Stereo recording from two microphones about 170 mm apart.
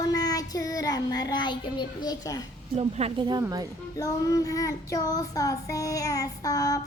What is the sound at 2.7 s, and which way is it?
Speech, 35° right (ahead or behind).